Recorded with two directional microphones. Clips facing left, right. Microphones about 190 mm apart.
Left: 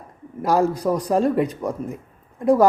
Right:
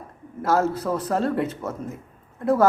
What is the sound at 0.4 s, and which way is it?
Speech, 15° left (ahead or behind).